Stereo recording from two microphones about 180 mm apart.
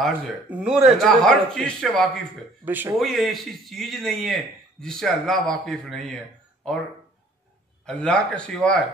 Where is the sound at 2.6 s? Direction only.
10° right (ahead or behind).